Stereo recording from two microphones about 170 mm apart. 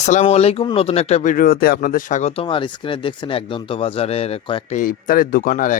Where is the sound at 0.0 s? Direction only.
45° left (ahead or behind).